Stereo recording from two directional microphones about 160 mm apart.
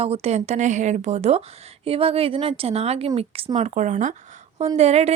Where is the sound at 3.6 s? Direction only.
45° right (ahead or behind).